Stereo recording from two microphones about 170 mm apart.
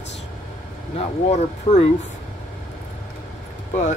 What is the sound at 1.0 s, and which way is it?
Speech, 40° left (ahead or behind).